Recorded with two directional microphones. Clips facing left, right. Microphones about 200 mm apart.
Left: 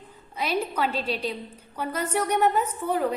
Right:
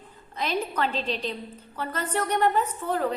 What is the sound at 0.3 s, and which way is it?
A woman's voice, 10° left (ahead or behind).